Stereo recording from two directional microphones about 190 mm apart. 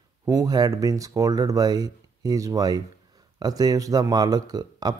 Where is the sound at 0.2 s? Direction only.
15° right (ahead or behind).